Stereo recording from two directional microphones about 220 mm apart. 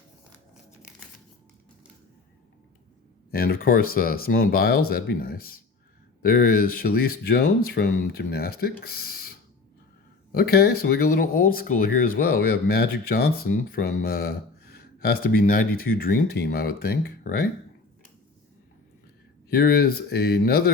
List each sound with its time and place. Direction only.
3.3 s speech: 45° left (ahead or behind)
10.3 s speech: 45° left (ahead or behind)
19.5 s speech: 45° left (ahead or behind)